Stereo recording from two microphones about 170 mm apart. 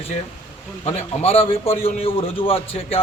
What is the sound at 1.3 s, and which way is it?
Speech, 35° left (ahead or behind).